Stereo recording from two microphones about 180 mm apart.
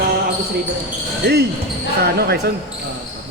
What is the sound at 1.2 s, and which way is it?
Speech, 65° right (ahead or behind).